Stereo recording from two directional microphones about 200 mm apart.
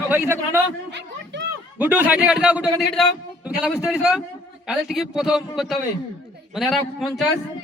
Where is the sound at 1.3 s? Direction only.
60° right (ahead or behind).